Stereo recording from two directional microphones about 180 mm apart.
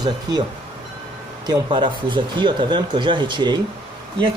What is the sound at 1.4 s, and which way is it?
Speech, 25° right (ahead or behind).